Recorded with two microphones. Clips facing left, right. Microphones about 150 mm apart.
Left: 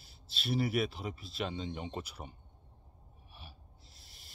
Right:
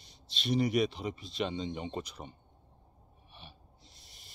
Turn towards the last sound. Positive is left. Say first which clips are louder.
# right 2 dB
turn(degrees=0)  # may be behind; listen again after turning